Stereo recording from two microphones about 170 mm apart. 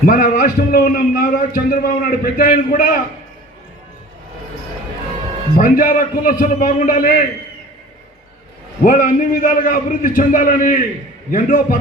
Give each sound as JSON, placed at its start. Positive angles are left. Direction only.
{"t": 0.0, "sound": "a man's voice", "side_deg": 55}
{"t": 5.5, "sound": "a man's voice", "side_deg": 55}
{"t": 8.8, "sound": "a man's voice", "side_deg": 50}